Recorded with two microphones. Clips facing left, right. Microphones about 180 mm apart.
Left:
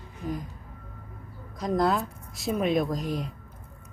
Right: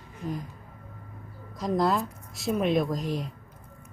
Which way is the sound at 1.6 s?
Centre (ahead or behind).